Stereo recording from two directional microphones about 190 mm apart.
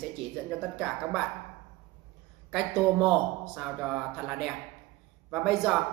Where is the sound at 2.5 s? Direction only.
Centre (ahead or behind).